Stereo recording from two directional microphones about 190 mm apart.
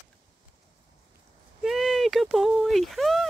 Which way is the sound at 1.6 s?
Centre (ahead or behind).